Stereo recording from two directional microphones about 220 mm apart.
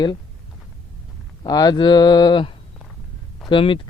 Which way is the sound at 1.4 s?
15° left (ahead or behind).